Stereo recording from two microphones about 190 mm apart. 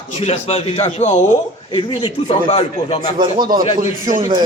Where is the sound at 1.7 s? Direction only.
25° left (ahead or behind).